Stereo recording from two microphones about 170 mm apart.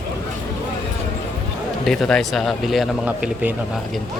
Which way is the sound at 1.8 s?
Centre (ahead or behind).